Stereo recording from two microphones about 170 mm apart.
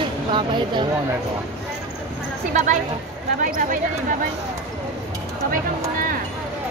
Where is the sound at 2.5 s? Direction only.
45° right (ahead or behind).